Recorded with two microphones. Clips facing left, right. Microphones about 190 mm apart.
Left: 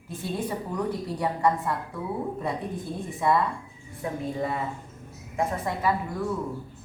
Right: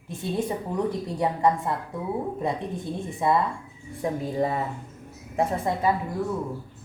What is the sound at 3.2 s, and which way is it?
Speech, 25° right (ahead or behind).